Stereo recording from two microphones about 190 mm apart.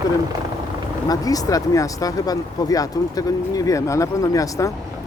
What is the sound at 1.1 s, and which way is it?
Speech, 20° left (ahead or behind).